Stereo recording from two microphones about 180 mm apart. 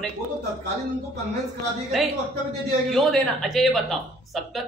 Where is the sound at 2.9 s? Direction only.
Centre (ahead or behind).